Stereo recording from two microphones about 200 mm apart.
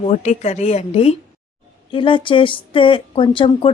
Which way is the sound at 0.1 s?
35° left (ahead or behind).